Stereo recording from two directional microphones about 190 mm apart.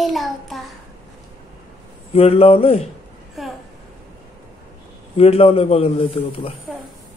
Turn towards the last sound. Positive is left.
turn(degrees=30)  # may be behind; listen again after turning